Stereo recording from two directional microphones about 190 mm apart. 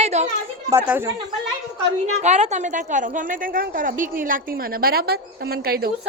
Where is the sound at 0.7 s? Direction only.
10° right (ahead or behind).